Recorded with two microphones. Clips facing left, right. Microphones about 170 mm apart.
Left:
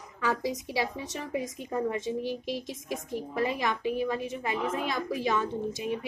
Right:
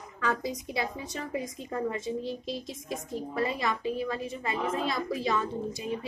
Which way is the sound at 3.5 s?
15° left (ahead or behind).